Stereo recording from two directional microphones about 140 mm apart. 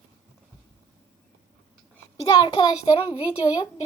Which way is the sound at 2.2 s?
30° left (ahead or behind).